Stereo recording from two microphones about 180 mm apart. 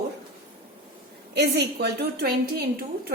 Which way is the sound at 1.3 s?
65° right (ahead or behind).